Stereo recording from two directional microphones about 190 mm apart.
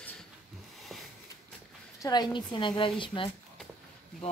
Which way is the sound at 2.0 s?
20° left (ahead or behind).